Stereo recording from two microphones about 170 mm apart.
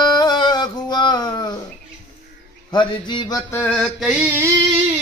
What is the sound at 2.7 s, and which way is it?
Mantra, 25° left (ahead or behind).